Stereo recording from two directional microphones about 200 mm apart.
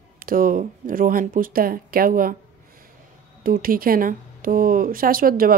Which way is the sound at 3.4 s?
45° right (ahead or behind).